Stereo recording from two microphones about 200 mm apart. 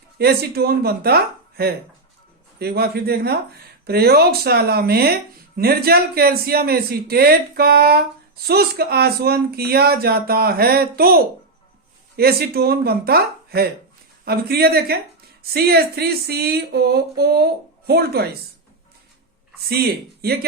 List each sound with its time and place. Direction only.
0.2 s speech: 50° right (ahead or behind)